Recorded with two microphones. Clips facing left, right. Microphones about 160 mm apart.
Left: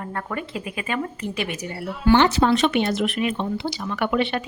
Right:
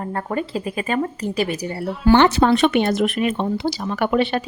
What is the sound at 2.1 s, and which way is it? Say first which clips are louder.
Speech: right 3 dB; 55° right (ahead or behind).